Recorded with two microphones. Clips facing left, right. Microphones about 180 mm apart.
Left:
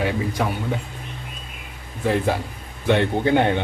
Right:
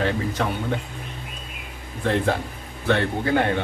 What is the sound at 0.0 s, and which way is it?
Speech, 10° left (ahead or behind).